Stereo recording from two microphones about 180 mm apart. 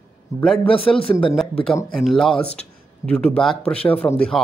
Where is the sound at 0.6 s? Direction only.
30° left (ahead or behind).